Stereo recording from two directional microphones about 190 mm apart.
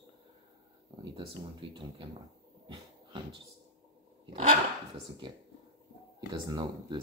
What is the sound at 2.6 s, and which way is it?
Dog, 25° right (ahead or behind).